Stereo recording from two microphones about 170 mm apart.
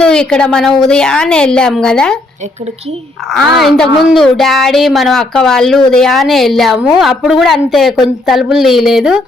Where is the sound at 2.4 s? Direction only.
40° right (ahead or behind).